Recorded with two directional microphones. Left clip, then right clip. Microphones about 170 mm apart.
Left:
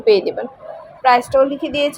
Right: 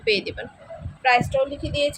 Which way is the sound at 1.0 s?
25° left (ahead or behind).